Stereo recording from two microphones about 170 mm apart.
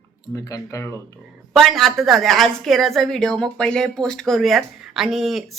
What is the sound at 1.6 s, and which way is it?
A woman's voice, centre (ahead or behind).